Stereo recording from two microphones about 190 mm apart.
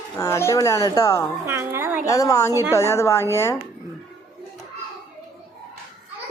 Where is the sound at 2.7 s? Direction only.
15° left (ahead or behind).